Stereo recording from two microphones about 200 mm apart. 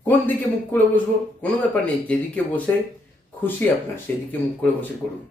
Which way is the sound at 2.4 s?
5° left (ahead or behind).